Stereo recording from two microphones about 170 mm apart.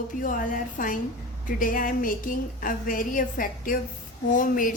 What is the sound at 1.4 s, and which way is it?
Speech, 50° left (ahead or behind).